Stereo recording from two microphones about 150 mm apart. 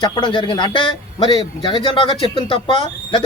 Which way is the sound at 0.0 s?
30° left (ahead or behind).